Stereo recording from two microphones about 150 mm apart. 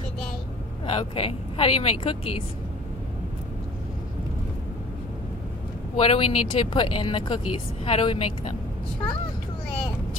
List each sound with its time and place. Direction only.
0.8 s speech: 40° left (ahead or behind)
6.0 s speech: 35° left (ahead or behind)